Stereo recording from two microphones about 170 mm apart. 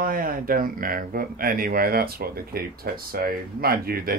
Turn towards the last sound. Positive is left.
turn(degrees=-60)  # may be behind; listen again after turning